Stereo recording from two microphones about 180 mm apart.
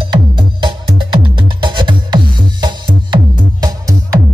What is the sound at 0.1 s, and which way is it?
Music, 25° right (ahead or behind).